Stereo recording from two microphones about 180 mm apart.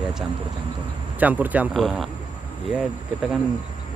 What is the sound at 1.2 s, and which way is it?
Speech, 10° right (ahead or behind).